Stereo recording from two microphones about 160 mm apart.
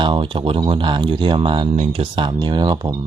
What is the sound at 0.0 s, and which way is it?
Speech, 30° right (ahead or behind).